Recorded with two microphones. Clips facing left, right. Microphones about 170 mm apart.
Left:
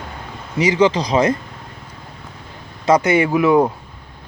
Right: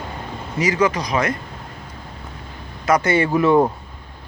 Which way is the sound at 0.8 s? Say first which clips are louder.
Left 6 dB; 30° left (ahead or behind).